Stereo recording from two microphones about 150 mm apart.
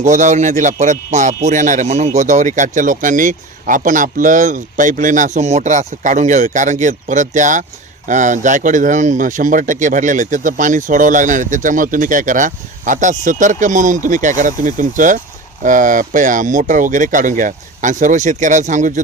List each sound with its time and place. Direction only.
0.0 s a man's voice: 55° right (ahead or behind)